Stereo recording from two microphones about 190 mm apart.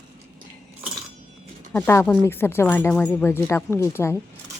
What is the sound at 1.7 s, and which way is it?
Speech, 15° left (ahead or behind).